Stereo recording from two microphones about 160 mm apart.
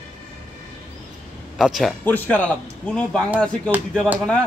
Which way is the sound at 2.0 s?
10° left (ahead or behind).